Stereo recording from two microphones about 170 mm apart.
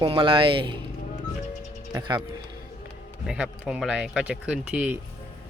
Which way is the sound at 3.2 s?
5° right (ahead or behind).